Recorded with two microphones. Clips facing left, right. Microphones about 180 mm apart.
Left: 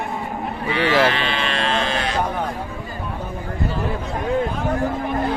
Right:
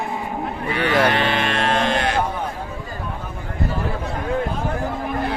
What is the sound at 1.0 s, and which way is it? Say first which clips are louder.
Sheep: right 2 dB; 55° right (ahead or behind).